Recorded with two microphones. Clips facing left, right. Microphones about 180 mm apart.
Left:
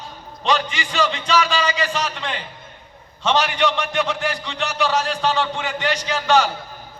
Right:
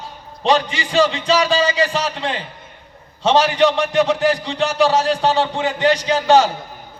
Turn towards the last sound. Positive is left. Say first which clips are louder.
# right 5 dB
turn(degrees=-35)  # may be behind; listen again after turning